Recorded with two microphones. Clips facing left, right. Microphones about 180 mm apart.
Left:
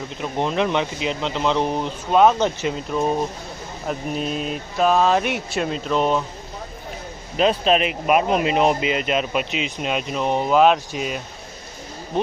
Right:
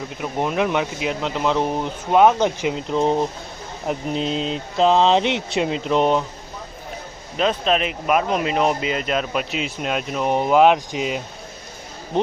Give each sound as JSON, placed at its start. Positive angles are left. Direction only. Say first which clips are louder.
{"t": 0.2, "sound": "speech", "louder": "even", "side_deg": -10}
{"t": 8.0, "sound": "speech", "louder": "left 1 dB", "side_deg": 10}
{"t": 10.2, "sound": "speech", "louder": "right 1 dB", "side_deg": -15}